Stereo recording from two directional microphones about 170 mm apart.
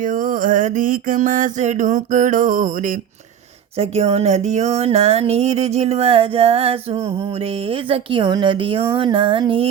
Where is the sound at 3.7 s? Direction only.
35° right (ahead or behind).